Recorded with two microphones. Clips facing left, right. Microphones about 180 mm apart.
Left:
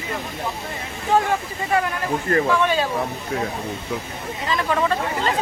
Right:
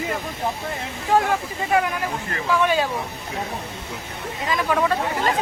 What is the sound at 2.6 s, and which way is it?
Speech, 10° right (ahead or behind).